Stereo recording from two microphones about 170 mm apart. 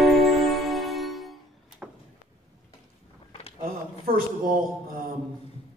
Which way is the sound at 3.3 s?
35° left (ahead or behind).